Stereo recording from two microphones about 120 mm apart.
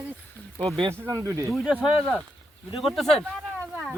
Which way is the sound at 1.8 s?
5° left (ahead or behind).